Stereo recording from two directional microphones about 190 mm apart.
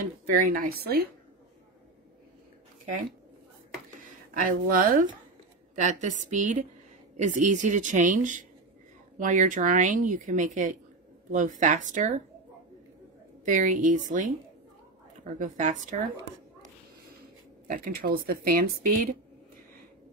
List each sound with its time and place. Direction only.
0.3 s speech: 50° right (ahead or behind)
4.0 s speech: 45° right (ahead or behind)
13.5 s speech: 40° right (ahead or behind)
15.3 s speech: 40° right (ahead or behind)
17.6 s speech: 50° right (ahead or behind)